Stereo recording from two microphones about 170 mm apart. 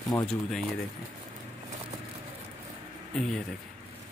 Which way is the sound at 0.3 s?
5° left (ahead or behind).